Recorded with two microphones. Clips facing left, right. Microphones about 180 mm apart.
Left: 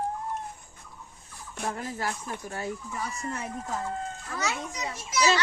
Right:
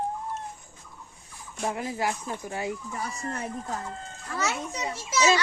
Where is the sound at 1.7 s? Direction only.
15° right (ahead or behind).